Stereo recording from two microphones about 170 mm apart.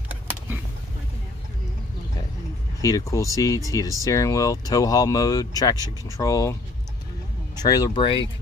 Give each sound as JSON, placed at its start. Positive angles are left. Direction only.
{"t": 3.1, "sound": "speech", "side_deg": 20}
{"t": 7.5, "sound": "speech", "side_deg": 25}